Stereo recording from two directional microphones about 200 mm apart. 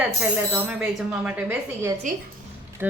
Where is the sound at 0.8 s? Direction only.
10° right (ahead or behind).